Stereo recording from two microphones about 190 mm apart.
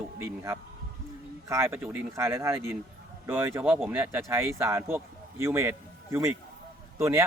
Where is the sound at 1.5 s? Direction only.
15° right (ahead or behind).